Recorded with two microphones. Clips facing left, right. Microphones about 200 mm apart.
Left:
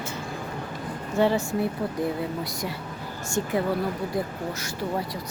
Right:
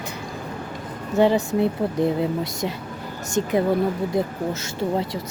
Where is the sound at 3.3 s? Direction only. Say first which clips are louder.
Right 5 dB; 20° right (ahead or behind).